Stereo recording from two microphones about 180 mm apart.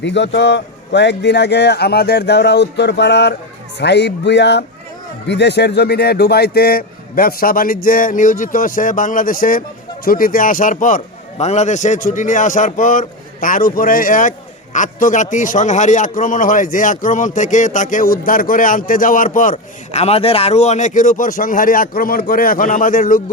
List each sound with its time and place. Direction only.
0.0 s a man's voice: 80° left; by 23.2 s 50° left (ahead or behind)